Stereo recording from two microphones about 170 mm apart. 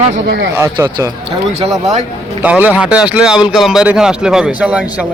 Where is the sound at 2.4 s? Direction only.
10° right (ahead or behind).